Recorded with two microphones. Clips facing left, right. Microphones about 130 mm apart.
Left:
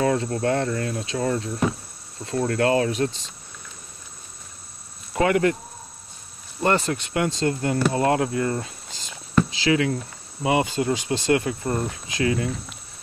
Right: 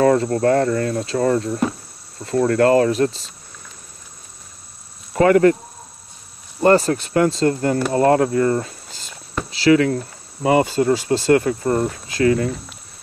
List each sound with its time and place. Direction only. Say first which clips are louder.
0.0 s cricket: right 7 dB; 50° right (ahead or behind)
5.2 s cricket: right 7 dB; 45° right (ahead or behind)
6.6 s speech: right 7 dB; 40° right (ahead or behind)
8.0 s cricket: right 6 dB; 45° right (ahead or behind)